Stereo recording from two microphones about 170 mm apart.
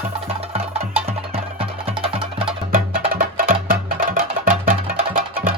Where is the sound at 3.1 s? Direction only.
55° right (ahead or behind).